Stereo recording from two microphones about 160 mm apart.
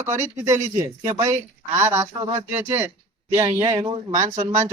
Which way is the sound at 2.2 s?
40° right (ahead or behind).